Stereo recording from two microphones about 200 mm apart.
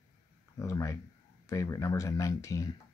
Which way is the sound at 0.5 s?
15° left (ahead or behind).